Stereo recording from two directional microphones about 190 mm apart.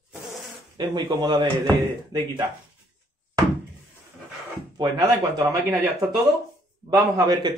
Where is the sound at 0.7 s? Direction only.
25° right (ahead or behind).